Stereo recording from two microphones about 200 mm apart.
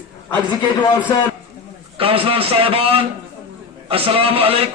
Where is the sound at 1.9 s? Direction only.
30° right (ahead or behind).